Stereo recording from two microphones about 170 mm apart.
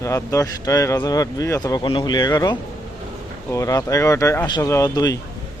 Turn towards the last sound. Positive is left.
turn(degrees=20)  # may be behind; listen again after turning